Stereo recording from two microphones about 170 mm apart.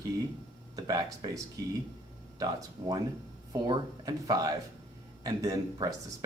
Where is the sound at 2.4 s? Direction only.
20° right (ahead or behind).